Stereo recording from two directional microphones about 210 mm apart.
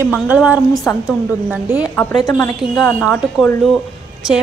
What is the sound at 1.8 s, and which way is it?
Speech, 10° left (ahead or behind).